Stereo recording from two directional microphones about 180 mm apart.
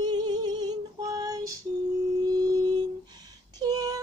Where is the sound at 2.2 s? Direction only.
20° right (ahead or behind).